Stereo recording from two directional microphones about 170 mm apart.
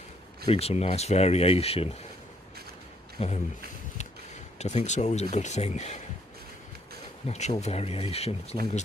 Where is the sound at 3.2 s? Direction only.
35° left (ahead or behind).